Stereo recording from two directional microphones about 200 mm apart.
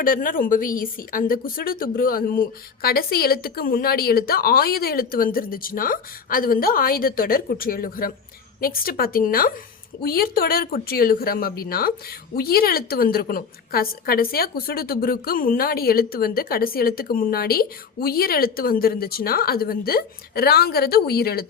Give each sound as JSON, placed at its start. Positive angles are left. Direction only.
{"t": 0.0, "sound": "a woman's voice", "side_deg": 45}